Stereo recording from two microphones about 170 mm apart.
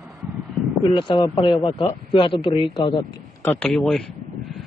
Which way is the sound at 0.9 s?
30° left (ahead or behind).